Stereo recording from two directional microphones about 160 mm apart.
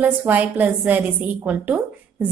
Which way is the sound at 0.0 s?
10° right (ahead or behind).